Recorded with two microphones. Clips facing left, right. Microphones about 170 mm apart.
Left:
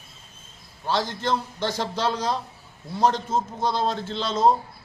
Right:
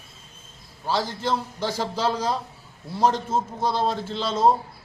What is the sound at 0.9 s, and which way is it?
Speech, 5° right (ahead or behind).